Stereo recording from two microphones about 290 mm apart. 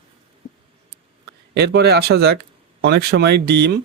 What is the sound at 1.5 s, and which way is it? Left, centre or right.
Speech, right.